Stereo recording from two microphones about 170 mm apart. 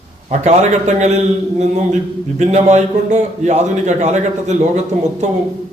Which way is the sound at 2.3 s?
45° right (ahead or behind).